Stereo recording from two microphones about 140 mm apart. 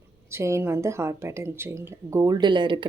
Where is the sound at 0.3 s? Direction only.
20° right (ahead or behind).